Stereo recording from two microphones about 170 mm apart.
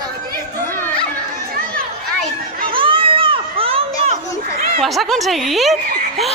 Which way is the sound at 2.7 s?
30° right (ahead or behind).